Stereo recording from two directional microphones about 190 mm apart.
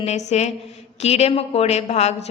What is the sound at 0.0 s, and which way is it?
A woman's voice, 35° left (ahead or behind).